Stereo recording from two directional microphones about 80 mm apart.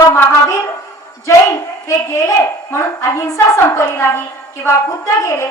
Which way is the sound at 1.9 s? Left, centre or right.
Left.